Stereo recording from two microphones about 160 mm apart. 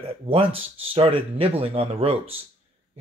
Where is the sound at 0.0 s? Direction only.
35° right (ahead or behind).